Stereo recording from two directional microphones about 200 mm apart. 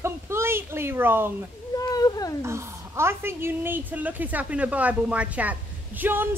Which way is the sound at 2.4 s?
15° right (ahead or behind).